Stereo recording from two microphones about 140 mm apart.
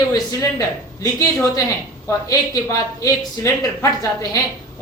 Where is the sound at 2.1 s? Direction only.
25° left (ahead or behind).